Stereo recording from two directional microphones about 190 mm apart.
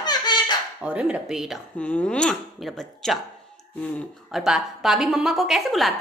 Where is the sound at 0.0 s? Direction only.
20° left (ahead or behind).